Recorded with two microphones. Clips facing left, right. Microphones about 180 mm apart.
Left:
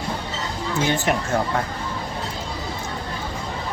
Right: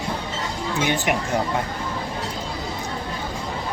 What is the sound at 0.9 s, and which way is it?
Speech, 15° right (ahead or behind).